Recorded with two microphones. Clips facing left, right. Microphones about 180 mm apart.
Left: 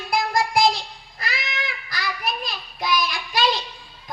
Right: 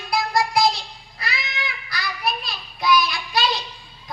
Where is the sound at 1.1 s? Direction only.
45° left (ahead or behind).